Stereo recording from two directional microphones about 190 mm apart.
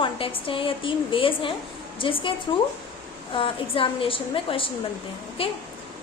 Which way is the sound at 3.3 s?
30° left (ahead or behind).